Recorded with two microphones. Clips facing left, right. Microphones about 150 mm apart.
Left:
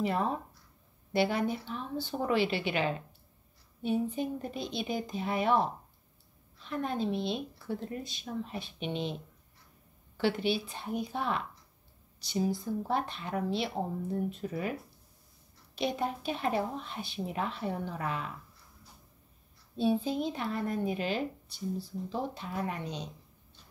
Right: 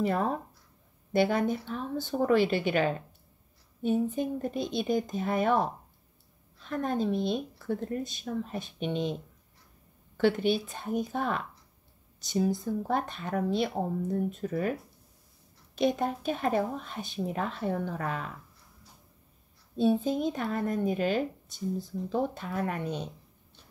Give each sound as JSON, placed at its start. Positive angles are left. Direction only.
{"t": 0.0, "sound": "a woman's voice", "side_deg": -45}
{"t": 10.1, "sound": "speech", "side_deg": -50}
{"t": 19.8, "sound": "speech", "side_deg": -50}